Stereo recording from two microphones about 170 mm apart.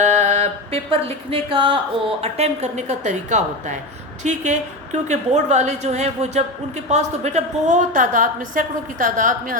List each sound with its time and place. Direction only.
0.0 s music: 45° right (ahead or behind)
2.2 s a woman's voice: 40° right (ahead or behind)